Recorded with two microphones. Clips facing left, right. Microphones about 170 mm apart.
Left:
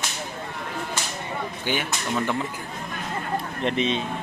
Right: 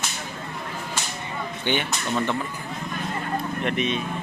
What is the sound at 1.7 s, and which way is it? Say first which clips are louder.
Speech: right 2 dB; 5° left (ahead or behind).